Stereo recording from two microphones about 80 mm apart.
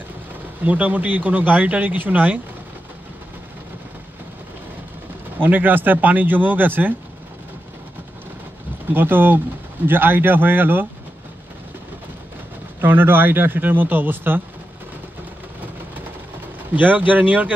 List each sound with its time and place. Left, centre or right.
0.7 s speech: right
5.4 s speech: right
8.9 s speech: right
12.8 s speech: right
16.7 s speech: right